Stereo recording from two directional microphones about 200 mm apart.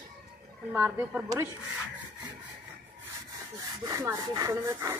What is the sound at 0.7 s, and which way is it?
Speech, 10° right (ahead or behind).